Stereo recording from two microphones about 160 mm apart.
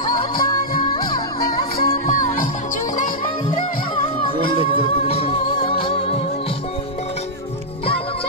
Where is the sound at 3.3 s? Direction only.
25° left (ahead or behind).